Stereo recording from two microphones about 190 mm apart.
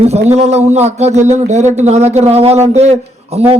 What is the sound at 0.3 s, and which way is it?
Speech, 35° right (ahead or behind).